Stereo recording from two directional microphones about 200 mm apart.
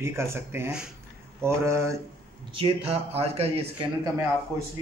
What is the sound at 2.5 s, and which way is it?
Speech, 30° right (ahead or behind).